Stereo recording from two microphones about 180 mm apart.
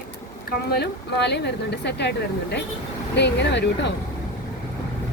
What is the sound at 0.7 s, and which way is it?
Speech, 65° left (ahead or behind).